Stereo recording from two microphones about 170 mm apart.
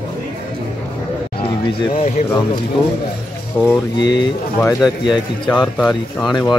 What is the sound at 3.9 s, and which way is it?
Speech, 25° left (ahead or behind).